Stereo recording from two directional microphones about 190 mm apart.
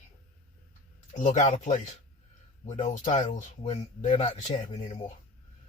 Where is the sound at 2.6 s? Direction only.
40° left (ahead or behind).